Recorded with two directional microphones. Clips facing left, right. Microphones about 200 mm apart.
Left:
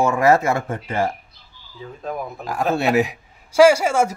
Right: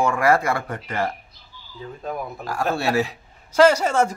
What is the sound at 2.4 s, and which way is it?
A man's voice, 20° left (ahead or behind).